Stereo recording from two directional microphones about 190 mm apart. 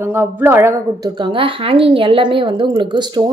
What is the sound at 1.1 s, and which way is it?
A woman's voice, 25° right (ahead or behind).